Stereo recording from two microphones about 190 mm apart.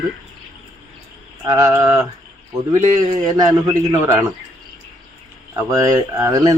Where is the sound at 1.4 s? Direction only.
20° right (ahead or behind).